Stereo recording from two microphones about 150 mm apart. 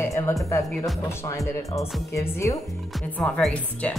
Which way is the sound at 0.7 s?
Centre (ahead or behind).